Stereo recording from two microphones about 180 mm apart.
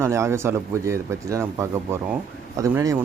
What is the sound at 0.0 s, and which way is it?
Speech, 15° right (ahead or behind).